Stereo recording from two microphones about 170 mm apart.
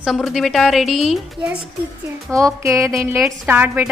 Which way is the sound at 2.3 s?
15° right (ahead or behind).